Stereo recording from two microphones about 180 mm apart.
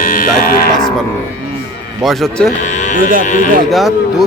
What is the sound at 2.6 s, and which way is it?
Livestock, 45° left (ahead or behind).